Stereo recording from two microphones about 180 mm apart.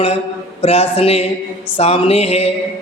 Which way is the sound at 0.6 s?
35° left (ahead or behind).